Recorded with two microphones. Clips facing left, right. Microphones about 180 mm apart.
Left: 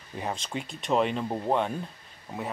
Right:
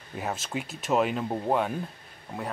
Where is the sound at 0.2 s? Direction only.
5° right (ahead or behind).